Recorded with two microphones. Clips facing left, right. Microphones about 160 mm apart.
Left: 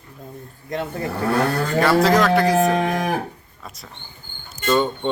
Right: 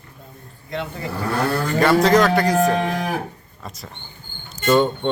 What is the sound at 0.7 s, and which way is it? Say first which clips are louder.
Speech: left 2 dB; 45° left (ahead or behind).